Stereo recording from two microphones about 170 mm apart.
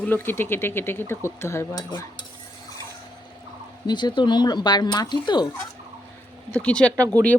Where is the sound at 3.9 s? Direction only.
25° left (ahead or behind).